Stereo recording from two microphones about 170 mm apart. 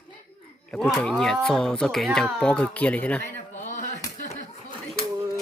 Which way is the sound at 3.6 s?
50° left (ahead or behind).